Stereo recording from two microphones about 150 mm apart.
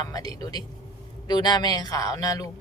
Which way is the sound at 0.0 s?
25° left (ahead or behind).